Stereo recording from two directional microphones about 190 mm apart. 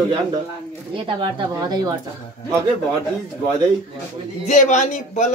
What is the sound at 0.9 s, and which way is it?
Speech, 25° right (ahead or behind).